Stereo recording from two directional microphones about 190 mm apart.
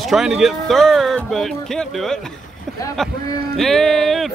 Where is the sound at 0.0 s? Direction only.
Centre (ahead or behind).